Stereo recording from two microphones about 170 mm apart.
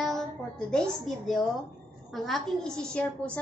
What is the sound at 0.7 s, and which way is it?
A woman's voice, 5° left (ahead or behind).